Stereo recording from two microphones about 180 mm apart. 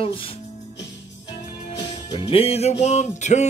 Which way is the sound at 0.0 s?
30° left (ahead or behind).